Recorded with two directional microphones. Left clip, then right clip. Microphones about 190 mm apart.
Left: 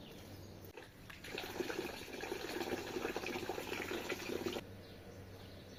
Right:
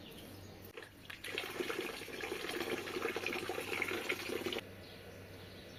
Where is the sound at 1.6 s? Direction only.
40° left (ahead or behind).